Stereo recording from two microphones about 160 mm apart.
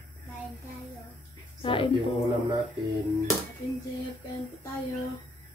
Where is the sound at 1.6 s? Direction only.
35° left (ahead or behind).